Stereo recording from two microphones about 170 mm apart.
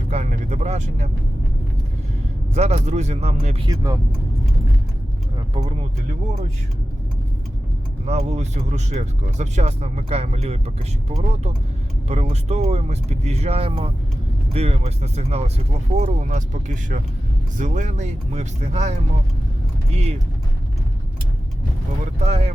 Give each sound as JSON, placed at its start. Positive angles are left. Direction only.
{"t": 0.1, "sound": "vehicle", "side_deg": -40}
{"t": 2.6, "sound": "speech", "side_deg": -40}
{"t": 3.7, "sound": "speech", "side_deg": -20}
{"t": 5.6, "sound": "speech", "side_deg": -40}
{"t": 8.0, "sound": "speech", "side_deg": -40}
{"t": 22.3, "sound": "speech", "side_deg": -40}